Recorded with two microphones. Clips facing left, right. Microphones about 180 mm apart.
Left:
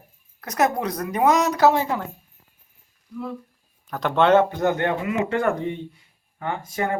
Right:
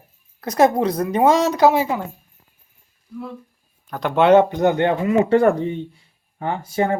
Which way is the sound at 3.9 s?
Centre (ahead or behind).